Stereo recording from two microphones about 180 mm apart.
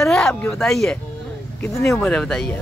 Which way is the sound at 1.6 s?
15° left (ahead or behind).